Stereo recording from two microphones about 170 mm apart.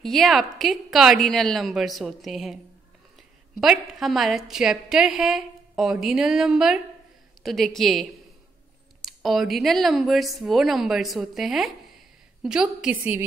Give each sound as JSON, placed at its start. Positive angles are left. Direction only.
{"t": 0.0, "sound": "a woman's voice", "side_deg": 0}
{"t": 3.6, "sound": "a woman's voice", "side_deg": 0}